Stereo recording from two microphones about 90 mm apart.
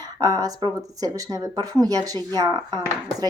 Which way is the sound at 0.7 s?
40° right (ahead or behind).